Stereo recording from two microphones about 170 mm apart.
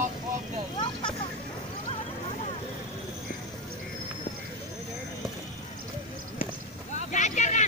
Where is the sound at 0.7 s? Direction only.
30° left (ahead or behind).